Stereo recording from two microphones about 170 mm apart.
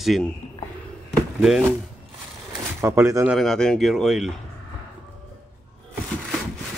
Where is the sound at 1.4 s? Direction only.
Centre (ahead or behind).